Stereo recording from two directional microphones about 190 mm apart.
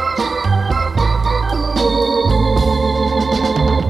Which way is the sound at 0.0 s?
Centre (ahead or behind).